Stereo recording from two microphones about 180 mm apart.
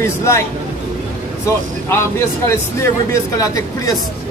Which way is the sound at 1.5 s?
15° left (ahead or behind).